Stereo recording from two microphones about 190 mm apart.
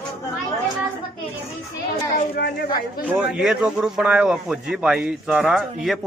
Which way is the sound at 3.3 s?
5° right (ahead or behind).